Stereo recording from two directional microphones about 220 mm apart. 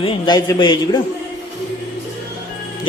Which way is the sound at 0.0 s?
20° left (ahead or behind).